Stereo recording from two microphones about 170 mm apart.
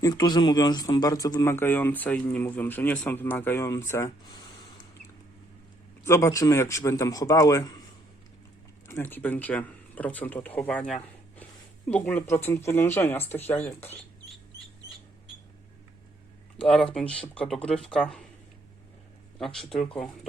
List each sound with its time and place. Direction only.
0.0 s a man's voice: 25° left (ahead or behind)
6.1 s a man's voice: 15° left (ahead or behind)
8.9 s a man's voice: 10° left (ahead or behind)
16.6 s speech: 5° left (ahead or behind)
19.4 s speech: centre (ahead or behind)